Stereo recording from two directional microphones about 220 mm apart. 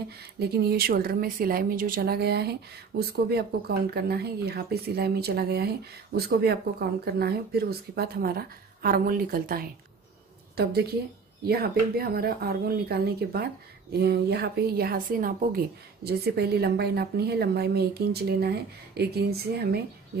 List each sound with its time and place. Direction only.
0.4 s a woman's voice: 45° right (ahead or behind)